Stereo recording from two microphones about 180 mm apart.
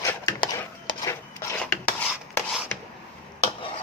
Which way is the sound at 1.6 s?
5° left (ahead or behind).